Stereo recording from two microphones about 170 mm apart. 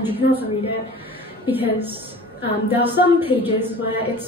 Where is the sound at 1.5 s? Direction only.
10° right (ahead or behind).